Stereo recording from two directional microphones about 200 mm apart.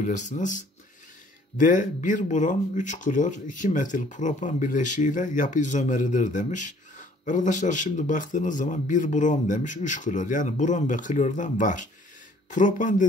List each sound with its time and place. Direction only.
0.0 s speech: 40° left (ahead or behind)